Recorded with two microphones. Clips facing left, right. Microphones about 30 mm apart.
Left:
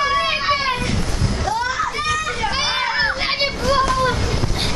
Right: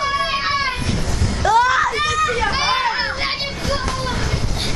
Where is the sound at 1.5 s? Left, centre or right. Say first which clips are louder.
Right 9 dB; right.